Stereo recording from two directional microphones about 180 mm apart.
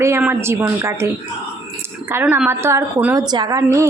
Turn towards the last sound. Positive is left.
turn(degrees=-15)  # may be behind; listen again after turning